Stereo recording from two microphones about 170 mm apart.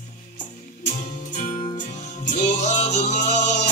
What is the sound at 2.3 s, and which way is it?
Music, 45° left (ahead or behind).